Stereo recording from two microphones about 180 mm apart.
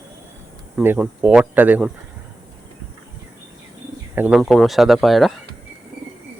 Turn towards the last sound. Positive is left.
turn(degrees=0)  # may be behind; listen again after turning